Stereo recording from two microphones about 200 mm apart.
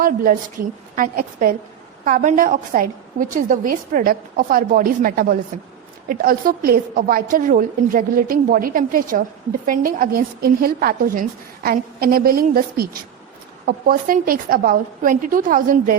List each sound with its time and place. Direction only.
0.0 s a woman's voice: 45° right (ahead or behind)